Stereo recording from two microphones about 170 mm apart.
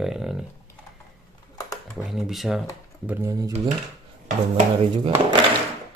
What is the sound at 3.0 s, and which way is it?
Speech, 10° right (ahead or behind).